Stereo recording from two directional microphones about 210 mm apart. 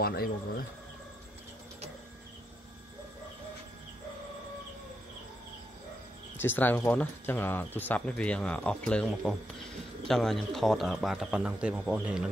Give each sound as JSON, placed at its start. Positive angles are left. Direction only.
{"t": 0.0, "sound": "speech", "side_deg": 45}
{"t": 6.3, "sound": "speech", "side_deg": 10}